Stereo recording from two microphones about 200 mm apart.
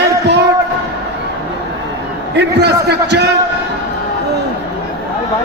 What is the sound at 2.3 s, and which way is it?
Speech, 55° right (ahead or behind).